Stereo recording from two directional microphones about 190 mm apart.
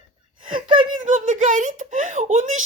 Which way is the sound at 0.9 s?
40° right (ahead or behind).